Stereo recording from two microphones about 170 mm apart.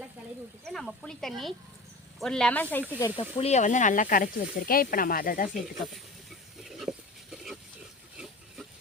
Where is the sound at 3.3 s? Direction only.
40° left (ahead or behind).